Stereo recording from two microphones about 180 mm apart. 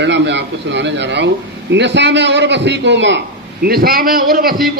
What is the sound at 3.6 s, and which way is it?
Speech, 55° right (ahead or behind).